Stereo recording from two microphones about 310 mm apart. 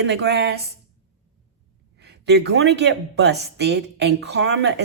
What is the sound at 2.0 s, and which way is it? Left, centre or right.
A woman's voice, right.